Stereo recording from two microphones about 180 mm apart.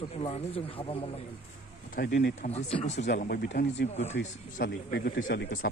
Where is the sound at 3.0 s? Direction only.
60° left (ahead or behind).